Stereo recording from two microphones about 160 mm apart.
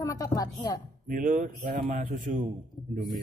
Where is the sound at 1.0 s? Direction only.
55° right (ahead or behind).